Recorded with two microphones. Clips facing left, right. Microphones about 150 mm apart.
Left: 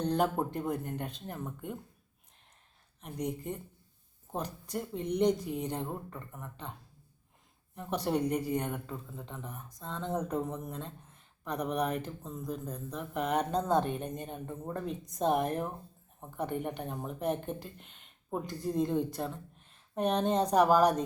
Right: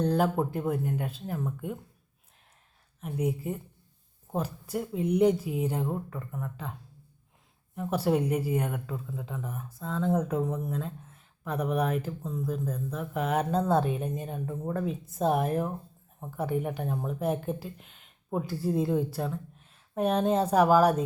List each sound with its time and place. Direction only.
0.0 s speech: 5° right (ahead or behind)
3.0 s speech: 5° right (ahead or behind)
7.8 s speech: 5° right (ahead or behind)